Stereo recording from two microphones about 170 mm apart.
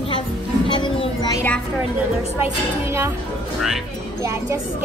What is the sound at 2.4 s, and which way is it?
Speech, 15° right (ahead or behind).